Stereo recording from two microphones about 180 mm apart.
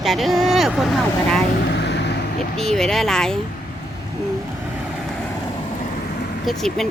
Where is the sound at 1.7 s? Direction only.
70° left (ahead or behind).